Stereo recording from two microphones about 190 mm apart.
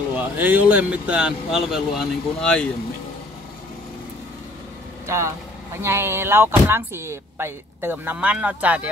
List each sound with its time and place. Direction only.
0.1 s speech: 10° right (ahead or behind)
5.0 s speech: 15° right (ahead or behind)